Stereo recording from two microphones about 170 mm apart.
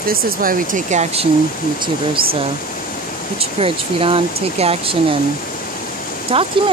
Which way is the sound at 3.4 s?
35° right (ahead or behind).